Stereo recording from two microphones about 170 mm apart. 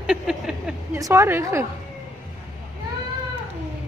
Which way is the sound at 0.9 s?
20° right (ahead or behind).